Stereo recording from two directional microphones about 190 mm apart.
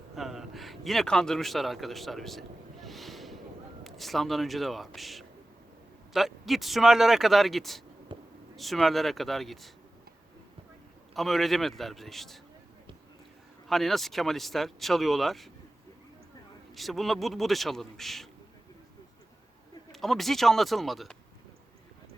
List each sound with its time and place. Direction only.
0.2 s a man's voice: centre (ahead or behind)
2.8 s boat: centre (ahead or behind)
3.8 s speech: centre (ahead or behind)
8.1 s a sound: 25° right (ahead or behind)
8.5 s speech: centre (ahead or behind)
11.1 s speech: centre (ahead or behind)
13.7 s speech: centre (ahead or behind)
16.7 s speech: centre (ahead or behind)
19.9 s speech: centre (ahead or behind)